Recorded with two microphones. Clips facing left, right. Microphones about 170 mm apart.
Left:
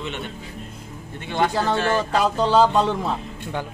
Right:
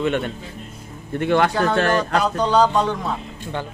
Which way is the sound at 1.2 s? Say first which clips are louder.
Right 4 dB; 65° right (ahead or behind).